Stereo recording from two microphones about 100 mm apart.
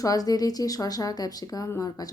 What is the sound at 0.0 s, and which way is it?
Speech, 40° left (ahead or behind).